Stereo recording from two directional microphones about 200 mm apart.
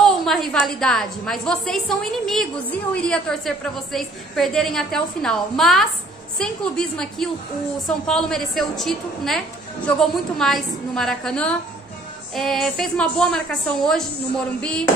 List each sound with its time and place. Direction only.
0.0 s a woman's voice: centre (ahead or behind)